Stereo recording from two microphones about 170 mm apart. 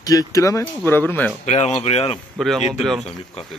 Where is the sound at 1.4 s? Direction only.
40° left (ahead or behind).